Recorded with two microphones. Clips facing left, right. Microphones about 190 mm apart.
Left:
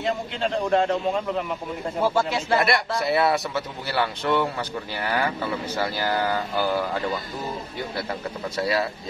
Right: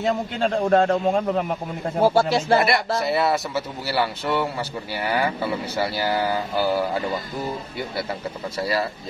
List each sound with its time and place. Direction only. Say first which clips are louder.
0.0 s a man's voice: right 3 dB; 45° right (ahead or behind)
3.0 s a man's voice: even; centre (ahead or behind)
8.5 s a man's voice: even; centre (ahead or behind)